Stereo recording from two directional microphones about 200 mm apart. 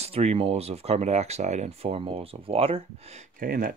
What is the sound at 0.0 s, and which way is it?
Speech, 30° right (ahead or behind).